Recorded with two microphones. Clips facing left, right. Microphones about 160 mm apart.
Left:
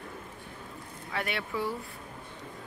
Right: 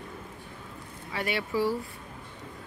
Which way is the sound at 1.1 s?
5° right (ahead or behind).